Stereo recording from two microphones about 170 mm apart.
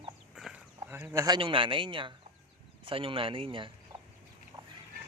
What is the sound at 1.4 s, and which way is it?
A man's voice, 30° right (ahead or behind).